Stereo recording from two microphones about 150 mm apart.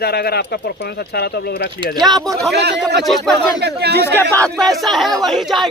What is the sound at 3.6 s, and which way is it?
Speech, 90° right.